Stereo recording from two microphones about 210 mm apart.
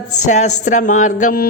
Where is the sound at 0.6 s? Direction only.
35° left (ahead or behind).